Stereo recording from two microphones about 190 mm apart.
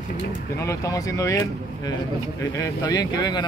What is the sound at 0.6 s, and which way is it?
Speech, 15° left (ahead or behind).